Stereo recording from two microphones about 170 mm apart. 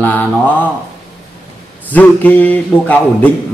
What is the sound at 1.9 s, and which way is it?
Music, 10° left (ahead or behind).